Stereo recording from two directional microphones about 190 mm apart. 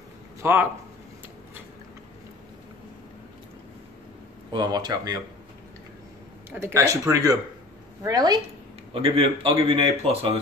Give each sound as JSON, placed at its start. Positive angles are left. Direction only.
{"t": 0.4, "sound": "speech", "side_deg": -10}
{"t": 4.5, "sound": "speech", "side_deg": -20}
{"t": 6.5, "sound": "a man's voice", "side_deg": -15}